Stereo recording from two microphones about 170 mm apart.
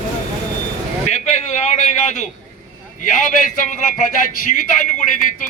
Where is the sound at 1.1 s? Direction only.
40° left (ahead or behind).